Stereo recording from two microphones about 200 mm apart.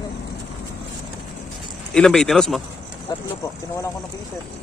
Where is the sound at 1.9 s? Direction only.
5° left (ahead or behind).